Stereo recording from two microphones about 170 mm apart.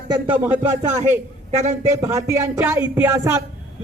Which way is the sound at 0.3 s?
10° right (ahead or behind).